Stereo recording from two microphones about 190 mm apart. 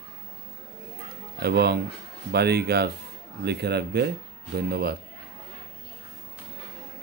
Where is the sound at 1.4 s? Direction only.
60° right (ahead or behind).